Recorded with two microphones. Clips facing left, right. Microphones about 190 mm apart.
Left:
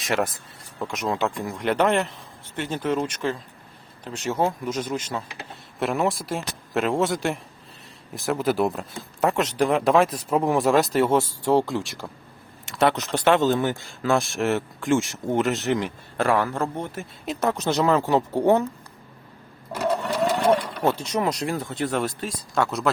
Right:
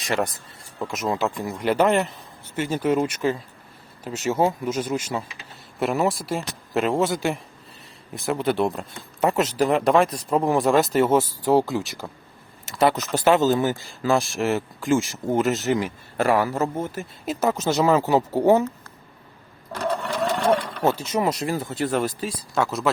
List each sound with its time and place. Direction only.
0.0 s speech: centre (ahead or behind)
19.7 s speech: 5° left (ahead or behind)